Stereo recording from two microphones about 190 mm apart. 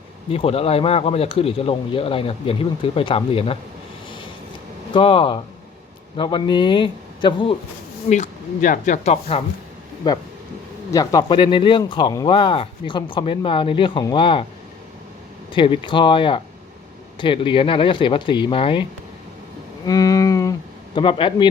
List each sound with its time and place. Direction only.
0.3 s speech: 30° left (ahead or behind)
4.9 s speech: 25° left (ahead or behind)
8.1 s speech: 40° left (ahead or behind)
10.0 s speech: 20° left (ahead or behind)
15.5 s speech: 25° left (ahead or behind)